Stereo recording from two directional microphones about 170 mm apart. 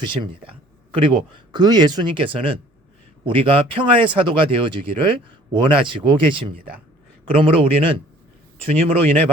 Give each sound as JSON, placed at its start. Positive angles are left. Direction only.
{"t": 0.0, "sound": "speech", "side_deg": -30}